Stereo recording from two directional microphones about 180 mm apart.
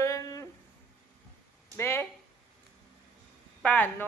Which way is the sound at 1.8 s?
15° left (ahead or behind).